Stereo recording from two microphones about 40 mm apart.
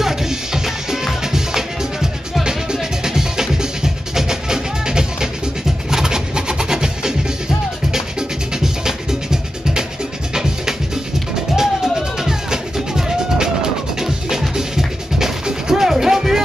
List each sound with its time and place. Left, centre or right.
0.0 s music: centre
11.5 s music: centre